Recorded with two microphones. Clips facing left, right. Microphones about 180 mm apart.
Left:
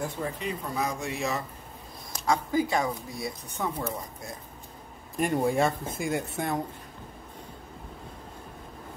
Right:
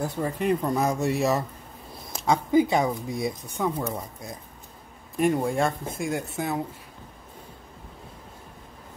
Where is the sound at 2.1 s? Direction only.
20° right (ahead or behind).